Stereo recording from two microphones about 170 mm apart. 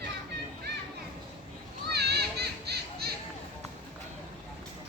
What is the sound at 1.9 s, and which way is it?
Children playing, 70° right (ahead or behind).